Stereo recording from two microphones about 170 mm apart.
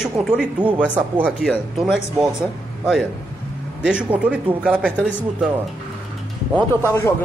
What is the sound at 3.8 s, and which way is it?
Speech, 5° right (ahead or behind).